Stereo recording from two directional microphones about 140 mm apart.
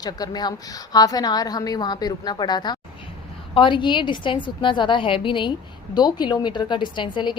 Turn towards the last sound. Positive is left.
turn(degrees=35)  # may be behind; listen again after turning